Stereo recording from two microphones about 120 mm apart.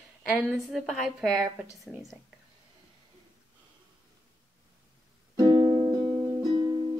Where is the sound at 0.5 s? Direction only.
Centre (ahead or behind).